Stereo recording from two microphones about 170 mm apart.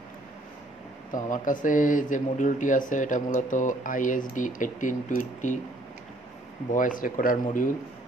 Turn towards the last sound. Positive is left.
turn(degrees=55)  # may be behind; listen again after turning